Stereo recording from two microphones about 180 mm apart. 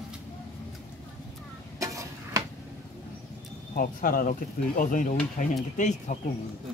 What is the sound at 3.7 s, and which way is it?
Speech, 50° left (ahead or behind).